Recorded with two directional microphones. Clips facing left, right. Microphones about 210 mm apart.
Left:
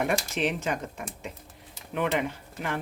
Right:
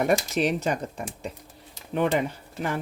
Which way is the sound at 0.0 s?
40° right (ahead or behind).